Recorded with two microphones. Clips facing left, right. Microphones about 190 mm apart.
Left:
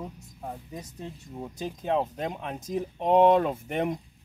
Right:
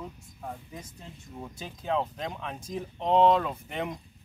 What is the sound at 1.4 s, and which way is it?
Speech, 20° left (ahead or behind).